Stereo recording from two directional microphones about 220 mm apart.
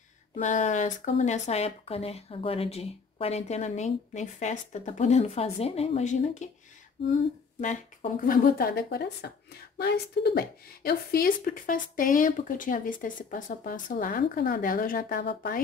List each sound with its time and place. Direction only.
0.4 s speech: 35° left (ahead or behind)
7.6 s speech: 35° left (ahead or behind)